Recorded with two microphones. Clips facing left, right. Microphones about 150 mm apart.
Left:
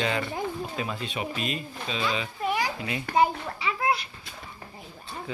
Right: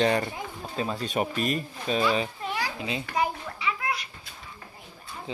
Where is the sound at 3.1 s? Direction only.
30° left (ahead or behind).